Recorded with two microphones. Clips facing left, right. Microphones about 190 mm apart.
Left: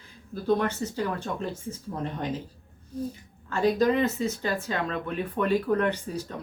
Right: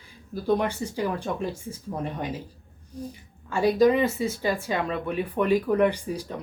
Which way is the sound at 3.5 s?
10° right (ahead or behind).